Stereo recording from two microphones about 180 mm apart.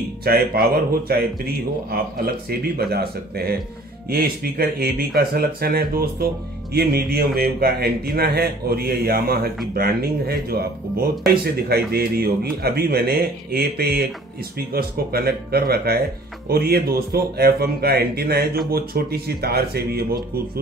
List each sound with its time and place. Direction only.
0.2 s speech: 60° right (ahead or behind)